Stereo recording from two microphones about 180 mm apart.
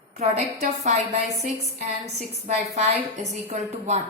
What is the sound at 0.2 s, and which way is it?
A woman's voice, 40° right (ahead or behind).